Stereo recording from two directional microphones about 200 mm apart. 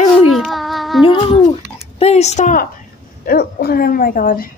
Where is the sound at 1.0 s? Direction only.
25° left (ahead or behind).